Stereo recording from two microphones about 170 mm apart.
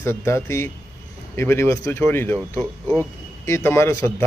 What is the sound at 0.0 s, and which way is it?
Speech, 15° left (ahead or behind).